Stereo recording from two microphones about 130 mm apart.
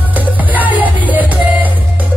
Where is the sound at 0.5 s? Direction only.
10° right (ahead or behind).